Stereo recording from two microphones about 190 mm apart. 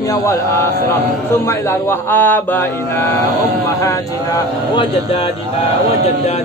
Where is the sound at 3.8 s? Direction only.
15° left (ahead or behind).